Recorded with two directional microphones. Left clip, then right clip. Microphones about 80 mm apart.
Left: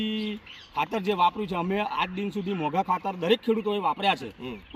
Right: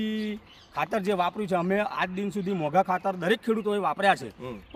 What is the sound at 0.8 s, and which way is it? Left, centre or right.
Speech, right.